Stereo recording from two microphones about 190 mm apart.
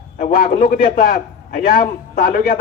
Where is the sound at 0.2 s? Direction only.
50° left (ahead or behind).